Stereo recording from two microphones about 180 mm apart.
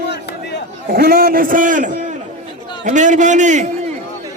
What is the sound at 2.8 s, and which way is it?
Speech, 45° right (ahead or behind).